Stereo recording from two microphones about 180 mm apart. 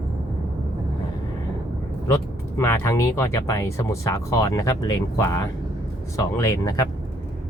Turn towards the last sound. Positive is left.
turn(degrees=20)  # may be behind; listen again after turning